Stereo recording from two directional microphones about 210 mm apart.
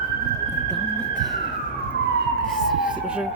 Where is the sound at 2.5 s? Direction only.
Centre (ahead or behind).